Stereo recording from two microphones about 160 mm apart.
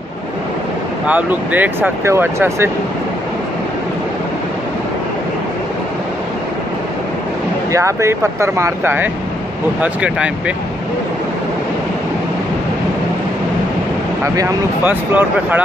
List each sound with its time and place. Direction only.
1.0 s speech: 10° right (ahead or behind)
7.7 s speech: 20° right (ahead or behind)
14.2 s speech: 20° right (ahead or behind)